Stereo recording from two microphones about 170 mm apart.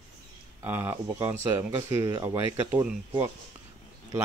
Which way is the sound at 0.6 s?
15° right (ahead or behind).